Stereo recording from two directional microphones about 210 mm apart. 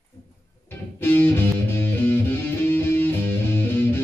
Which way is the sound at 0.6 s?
10° left (ahead or behind).